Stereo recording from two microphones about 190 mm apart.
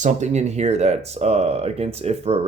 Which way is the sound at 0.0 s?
40° right (ahead or behind).